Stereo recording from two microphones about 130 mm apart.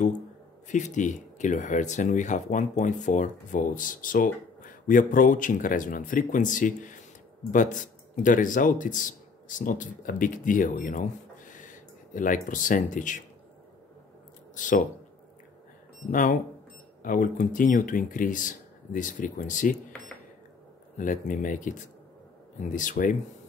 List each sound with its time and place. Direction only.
0.7 s speech: 70° left (ahead or behind)
14.5 s a sound: 80° left
16.1 s speech: 90° left
21.0 s speech: 90° left